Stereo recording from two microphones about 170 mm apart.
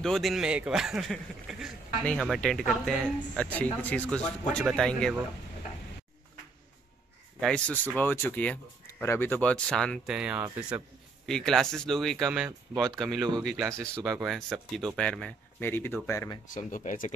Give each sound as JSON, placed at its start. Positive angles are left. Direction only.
{"t": 0.0, "sound": "speech", "side_deg": 0}
{"t": 7.3, "sound": "speech", "side_deg": 5}
{"t": 16.4, "sound": "speech", "side_deg": 50}